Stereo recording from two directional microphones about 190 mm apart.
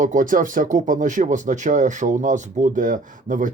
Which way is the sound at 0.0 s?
45° right (ahead or behind).